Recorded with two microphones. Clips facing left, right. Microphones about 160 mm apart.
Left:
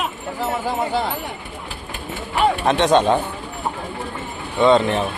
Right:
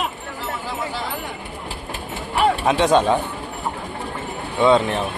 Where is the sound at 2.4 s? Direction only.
5° right (ahead or behind).